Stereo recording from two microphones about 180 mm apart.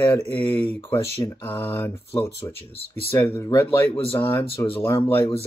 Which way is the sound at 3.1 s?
15° left (ahead or behind).